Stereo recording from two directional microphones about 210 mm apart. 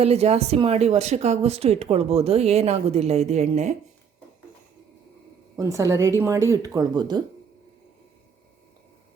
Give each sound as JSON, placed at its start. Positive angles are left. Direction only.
{"t": 0.0, "sound": "speech", "side_deg": -30}
{"t": 5.5, "sound": "speech", "side_deg": -15}